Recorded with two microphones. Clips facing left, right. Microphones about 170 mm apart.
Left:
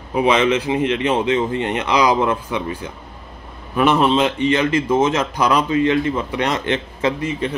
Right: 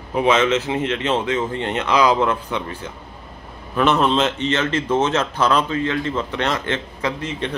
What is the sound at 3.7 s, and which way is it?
Speech, 10° left (ahead or behind).